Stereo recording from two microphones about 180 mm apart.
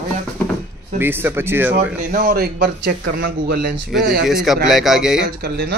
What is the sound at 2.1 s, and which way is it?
Speech, 55° right (ahead or behind).